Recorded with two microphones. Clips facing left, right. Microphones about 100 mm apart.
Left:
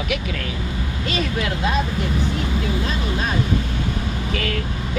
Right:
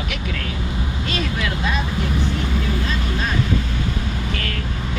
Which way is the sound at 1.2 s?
40° left (ahead or behind).